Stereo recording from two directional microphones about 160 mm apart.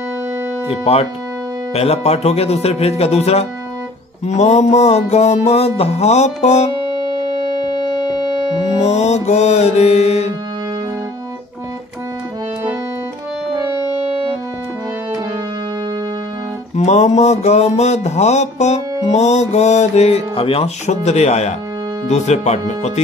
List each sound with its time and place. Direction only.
0.7 s speech: 40° left (ahead or behind)
8.8 s speech: 45° left (ahead or behind)
16.7 s speech: 45° left (ahead or behind)